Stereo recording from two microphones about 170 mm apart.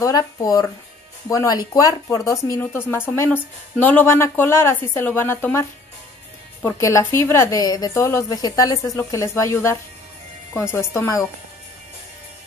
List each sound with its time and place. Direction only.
0.0 s a woman's voice: 20° left (ahead or behind)